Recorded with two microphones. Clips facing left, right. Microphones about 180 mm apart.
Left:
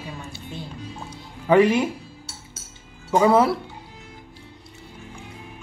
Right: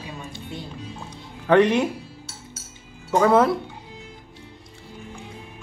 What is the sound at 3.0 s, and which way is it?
Speech, 10° left (ahead or behind).